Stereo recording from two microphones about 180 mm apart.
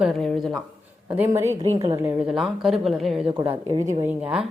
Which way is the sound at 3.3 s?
30° right (ahead or behind).